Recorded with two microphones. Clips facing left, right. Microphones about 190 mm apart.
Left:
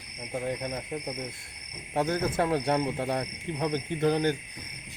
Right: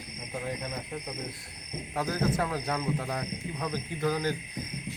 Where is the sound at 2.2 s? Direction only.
30° left (ahead or behind).